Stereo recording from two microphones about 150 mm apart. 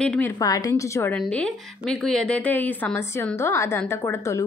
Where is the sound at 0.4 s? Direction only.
25° left (ahead or behind).